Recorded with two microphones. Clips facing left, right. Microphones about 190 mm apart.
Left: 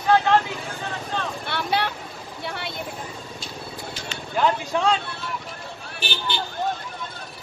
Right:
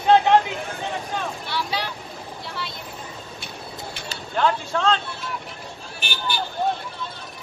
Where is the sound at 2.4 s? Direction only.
60° left (ahead or behind).